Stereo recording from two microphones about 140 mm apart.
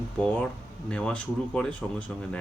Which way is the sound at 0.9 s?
5° left (ahead or behind).